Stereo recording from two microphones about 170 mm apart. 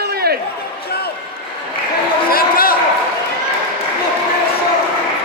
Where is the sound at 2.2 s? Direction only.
60° left (ahead or behind).